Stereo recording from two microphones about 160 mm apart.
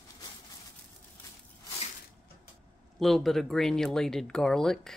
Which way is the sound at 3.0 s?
Centre (ahead or behind).